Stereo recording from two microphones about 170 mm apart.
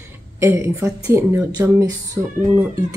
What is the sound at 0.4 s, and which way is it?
Speech, 15° right (ahead or behind).